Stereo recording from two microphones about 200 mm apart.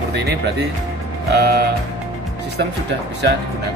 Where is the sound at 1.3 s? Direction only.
55° right (ahead or behind).